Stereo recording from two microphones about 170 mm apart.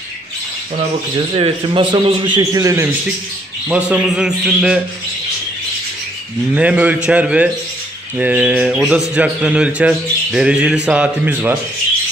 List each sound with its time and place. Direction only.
1.3 s a man's voice: 30° right (ahead or behind)
3.6 s a man's voice: 5° right (ahead or behind)
6.5 s speech: 10° right (ahead or behind)